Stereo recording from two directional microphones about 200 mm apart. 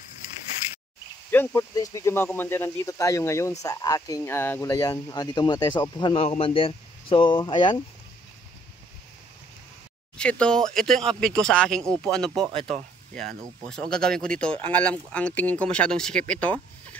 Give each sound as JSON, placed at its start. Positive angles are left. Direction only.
{"t": 1.3, "sound": "speech", "side_deg": 10}
{"t": 10.1, "sound": "speech", "side_deg": 5}
{"t": 12.4, "sound": "speech", "side_deg": -25}
{"t": 13.7, "sound": "speech", "side_deg": 5}